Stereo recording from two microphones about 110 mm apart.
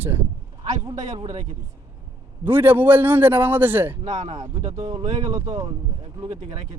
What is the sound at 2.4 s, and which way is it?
Speech, 20° right (ahead or behind).